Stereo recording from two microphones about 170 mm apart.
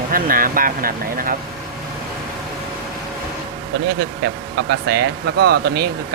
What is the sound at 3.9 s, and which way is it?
Speech, 70° right (ahead or behind).